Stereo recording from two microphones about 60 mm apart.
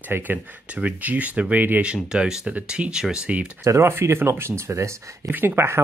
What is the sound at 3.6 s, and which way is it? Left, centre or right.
Speech, right.